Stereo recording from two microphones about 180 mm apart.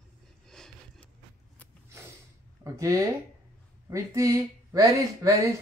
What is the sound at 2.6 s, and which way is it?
Speech, 15° right (ahead or behind).